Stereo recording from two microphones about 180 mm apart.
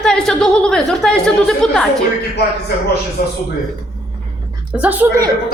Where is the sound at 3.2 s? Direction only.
55° left (ahead or behind).